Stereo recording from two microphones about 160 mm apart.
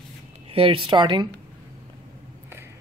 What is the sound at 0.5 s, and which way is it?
Speech, 35° right (ahead or behind).